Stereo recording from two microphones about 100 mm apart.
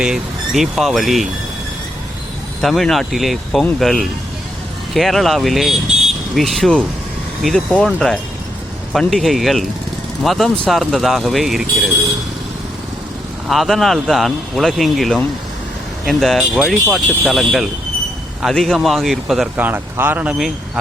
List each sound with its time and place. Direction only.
0.0 s speech: 5° right (ahead or behind)
2.6 s speech: centre (ahead or behind)
13.5 s speech: centre (ahead or behind)
19.5 s speech: 20° right (ahead or behind)